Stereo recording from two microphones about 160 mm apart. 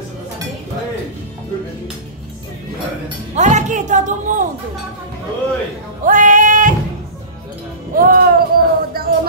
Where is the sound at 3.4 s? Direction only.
45° right (ahead or behind).